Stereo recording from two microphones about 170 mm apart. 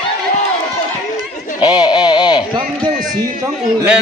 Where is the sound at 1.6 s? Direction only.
25° left (ahead or behind).